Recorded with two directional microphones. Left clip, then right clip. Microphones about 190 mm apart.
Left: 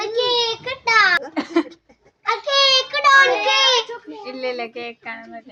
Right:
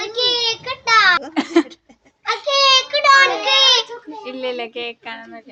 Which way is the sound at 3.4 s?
15° left (ahead or behind).